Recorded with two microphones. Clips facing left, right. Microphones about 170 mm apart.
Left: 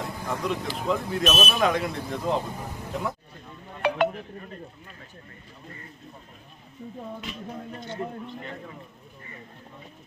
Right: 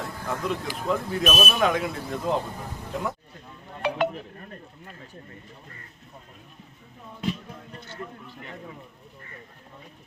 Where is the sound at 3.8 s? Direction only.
60° left (ahead or behind).